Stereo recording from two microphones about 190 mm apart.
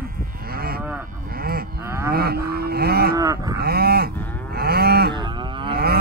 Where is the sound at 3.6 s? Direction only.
55° right (ahead or behind).